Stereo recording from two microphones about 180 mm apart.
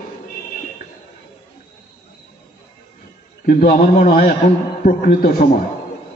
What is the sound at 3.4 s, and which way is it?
A man's voice, 50° left (ahead or behind).